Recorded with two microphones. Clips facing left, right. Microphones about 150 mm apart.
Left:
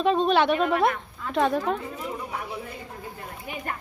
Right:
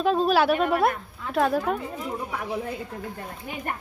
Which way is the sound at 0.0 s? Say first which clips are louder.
Even; 5° right (ahead or behind).